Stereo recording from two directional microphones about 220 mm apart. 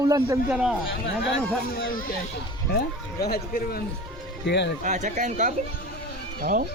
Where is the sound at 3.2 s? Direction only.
45° left (ahead or behind).